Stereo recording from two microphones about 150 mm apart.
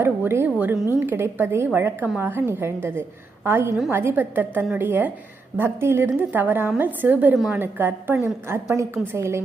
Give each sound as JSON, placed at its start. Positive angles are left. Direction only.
{"t": 0.0, "sound": "a woman's voice", "side_deg": -15}